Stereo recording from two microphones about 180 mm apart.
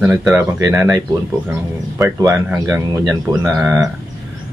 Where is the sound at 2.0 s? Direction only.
15° right (ahead or behind).